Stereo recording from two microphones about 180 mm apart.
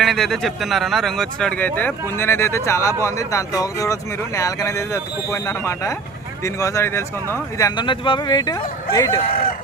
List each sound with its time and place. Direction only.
0.0 s speech: centre (ahead or behind)
7.8 s speech: 25° left (ahead or behind)
9.3 s chicken: 55° left (ahead or behind)